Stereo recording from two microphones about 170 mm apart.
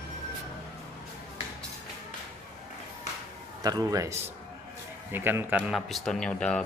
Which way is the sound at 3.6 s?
20° right (ahead or behind).